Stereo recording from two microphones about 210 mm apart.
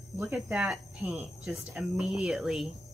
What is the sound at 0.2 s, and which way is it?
Speech, 5° right (ahead or behind).